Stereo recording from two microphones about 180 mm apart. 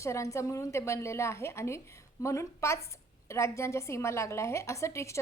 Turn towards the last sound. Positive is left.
turn(degrees=15)  # may be behind; listen again after turning